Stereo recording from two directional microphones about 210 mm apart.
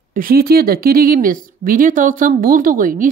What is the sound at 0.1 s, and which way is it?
Speech, 45° right (ahead or behind).